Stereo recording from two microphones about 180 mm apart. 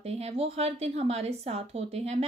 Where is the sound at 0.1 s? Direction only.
35° right (ahead or behind).